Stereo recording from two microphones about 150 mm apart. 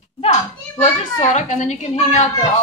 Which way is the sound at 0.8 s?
50° left (ahead or behind).